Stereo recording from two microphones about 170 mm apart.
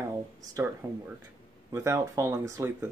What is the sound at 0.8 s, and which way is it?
Speech, 20° right (ahead or behind).